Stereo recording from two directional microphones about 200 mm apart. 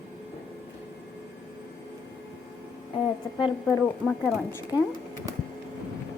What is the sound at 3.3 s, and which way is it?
Speech, 20° left (ahead or behind).